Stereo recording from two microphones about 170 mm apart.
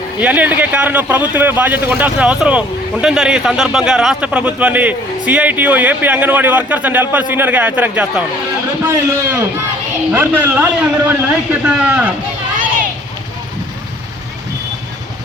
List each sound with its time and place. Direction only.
0.2 s a man's voice: 10° right (ahead or behind)